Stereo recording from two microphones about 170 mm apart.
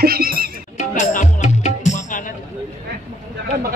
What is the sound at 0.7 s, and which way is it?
Music, 45° left (ahead or behind).